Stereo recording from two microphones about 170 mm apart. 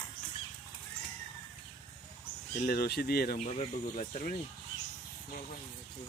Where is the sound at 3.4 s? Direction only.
40° left (ahead or behind).